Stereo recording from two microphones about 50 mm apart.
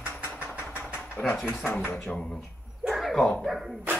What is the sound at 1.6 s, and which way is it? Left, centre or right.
Speech, left.